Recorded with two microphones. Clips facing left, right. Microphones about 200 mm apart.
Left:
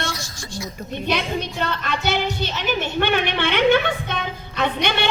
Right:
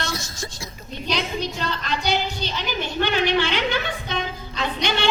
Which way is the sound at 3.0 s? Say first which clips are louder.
Right 2 dB; 60° left (ahead or behind).